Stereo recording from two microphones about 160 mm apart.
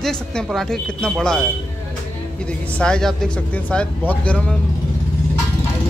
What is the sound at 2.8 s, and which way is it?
Speech, 5° left (ahead or behind).